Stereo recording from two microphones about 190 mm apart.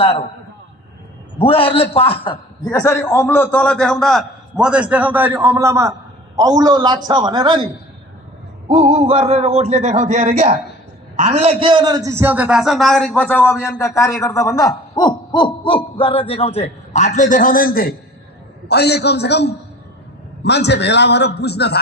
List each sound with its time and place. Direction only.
1.4 s speech: 30° left (ahead or behind)
2.7 s a man's voice: 15° left (ahead or behind); by 17.9 s 50° left (ahead or behind)
18.7 s a man's voice: 60° left (ahead or behind)